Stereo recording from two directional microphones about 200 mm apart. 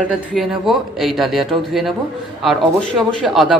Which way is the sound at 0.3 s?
Centre (ahead or behind).